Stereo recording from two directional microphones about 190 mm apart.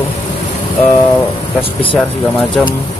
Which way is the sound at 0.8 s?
30° left (ahead or behind).